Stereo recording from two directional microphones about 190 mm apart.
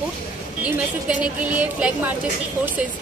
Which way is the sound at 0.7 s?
5° right (ahead or behind).